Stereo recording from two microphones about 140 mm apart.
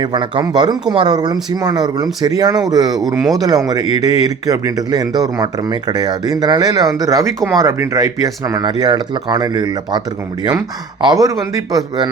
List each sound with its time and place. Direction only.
0.0 s speech: 30° right (ahead or behind)
3.0 s speech: centre (ahead or behind)
3.7 s speech: 30° right (ahead or behind)
11.0 s speech: 25° right (ahead or behind)